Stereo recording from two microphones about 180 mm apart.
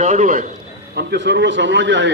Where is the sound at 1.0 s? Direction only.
75° right (ahead or behind).